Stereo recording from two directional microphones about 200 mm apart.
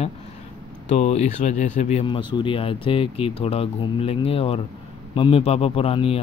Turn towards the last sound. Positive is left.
turn(degrees=30)  # may be behind; listen again after turning